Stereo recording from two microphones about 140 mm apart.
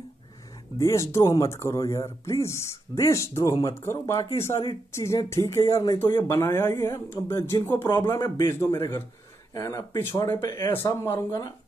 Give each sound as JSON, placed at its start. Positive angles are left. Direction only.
{"t": 0.7, "sound": "speech", "side_deg": 20}
{"t": 4.5, "sound": "speech", "side_deg": 40}
{"t": 4.9, "sound": "speech", "side_deg": 20}
{"t": 6.2, "sound": "speech", "side_deg": 15}